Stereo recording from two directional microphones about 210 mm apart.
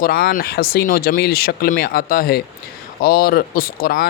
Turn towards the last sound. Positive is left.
turn(degrees=45)  # may be behind; listen again after turning